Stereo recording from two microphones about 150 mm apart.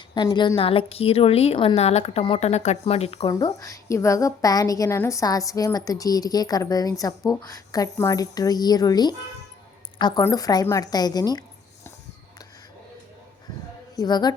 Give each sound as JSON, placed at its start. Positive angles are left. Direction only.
{"t": 0.1, "sound": "a woman's voice", "side_deg": 30}
{"t": 3.2, "sound": "a woman's voice", "side_deg": 25}
{"t": 13.9, "sound": "speech", "side_deg": 25}